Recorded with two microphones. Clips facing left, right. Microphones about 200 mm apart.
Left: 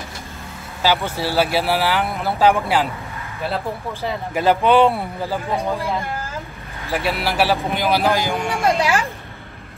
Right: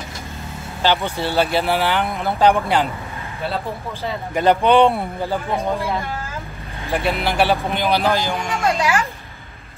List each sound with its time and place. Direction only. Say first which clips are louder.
0.8 s speech: even; 5° left (ahead or behind)
4.0 s speech: right 1 dB; 5° left (ahead or behind)
6.9 s speech: right 1 dB; 5° left (ahead or behind)
8.6 s speech: left 1 dB; 30° left (ahead or behind)